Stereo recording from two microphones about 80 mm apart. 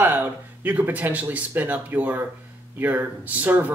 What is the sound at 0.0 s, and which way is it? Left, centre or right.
Speech, right.